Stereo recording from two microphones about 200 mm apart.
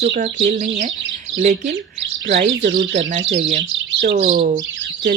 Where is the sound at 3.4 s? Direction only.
35° right (ahead or behind).